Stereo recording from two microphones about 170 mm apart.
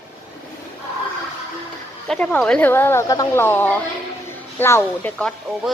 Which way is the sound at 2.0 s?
5° left (ahead or behind).